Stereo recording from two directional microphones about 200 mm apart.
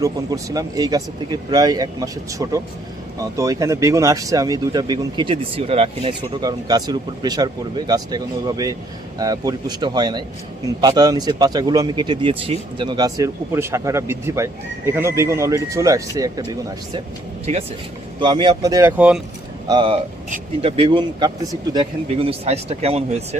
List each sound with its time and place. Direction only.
0.0 s a man's voice: 15° right (ahead or behind)
18.2 s a man's voice: 25° right (ahead or behind); by 19.2 s 5° right (ahead or behind)
19.6 s speech: 25° right (ahead or behind)